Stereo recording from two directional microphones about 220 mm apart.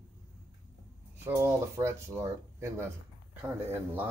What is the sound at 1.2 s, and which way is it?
Speech, 10° right (ahead or behind).